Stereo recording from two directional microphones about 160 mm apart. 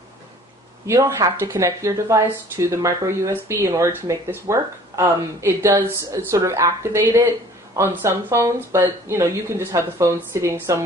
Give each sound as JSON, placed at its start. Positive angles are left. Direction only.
{"t": 0.9, "sound": "speech", "side_deg": -15}